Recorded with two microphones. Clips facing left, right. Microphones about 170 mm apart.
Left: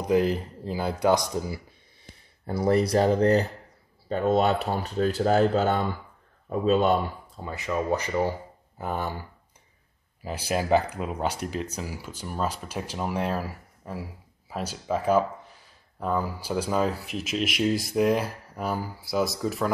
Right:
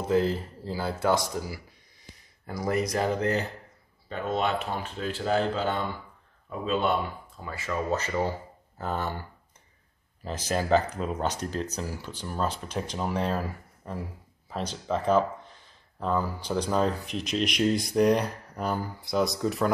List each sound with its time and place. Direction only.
0.0 s speech: 15° left (ahead or behind); by 7.0 s 40° left (ahead or behind)
7.3 s speech: 20° left (ahead or behind)
10.2 s speech: 10° left (ahead or behind)